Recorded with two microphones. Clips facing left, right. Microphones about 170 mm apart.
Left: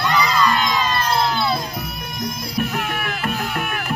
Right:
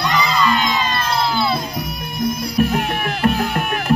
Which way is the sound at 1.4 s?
5° right (ahead or behind).